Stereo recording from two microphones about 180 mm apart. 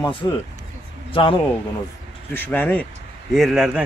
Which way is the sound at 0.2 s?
20° left (ahead or behind).